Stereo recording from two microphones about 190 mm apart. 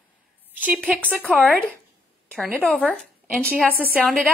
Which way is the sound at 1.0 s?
5° left (ahead or behind).